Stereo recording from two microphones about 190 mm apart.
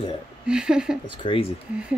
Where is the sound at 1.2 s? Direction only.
25° left (ahead or behind).